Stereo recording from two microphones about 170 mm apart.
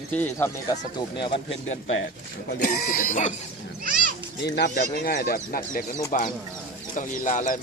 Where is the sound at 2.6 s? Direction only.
60° left (ahead or behind).